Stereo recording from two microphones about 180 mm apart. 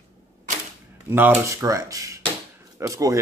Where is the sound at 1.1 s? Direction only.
10° right (ahead or behind).